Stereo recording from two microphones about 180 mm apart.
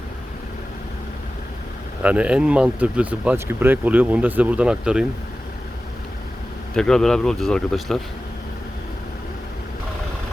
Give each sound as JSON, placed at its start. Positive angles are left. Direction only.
{"t": 2.0, "sound": "speech", "side_deg": -10}
{"t": 6.7, "sound": "speech", "side_deg": 5}